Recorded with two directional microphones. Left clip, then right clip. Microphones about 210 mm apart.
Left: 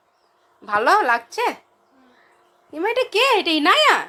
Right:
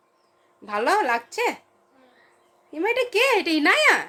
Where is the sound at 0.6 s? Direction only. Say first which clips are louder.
Left 5 dB; 5° right (ahead or behind).